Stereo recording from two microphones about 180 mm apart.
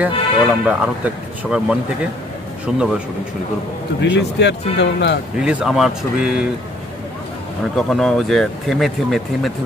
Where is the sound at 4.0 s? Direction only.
70° left (ahead or behind).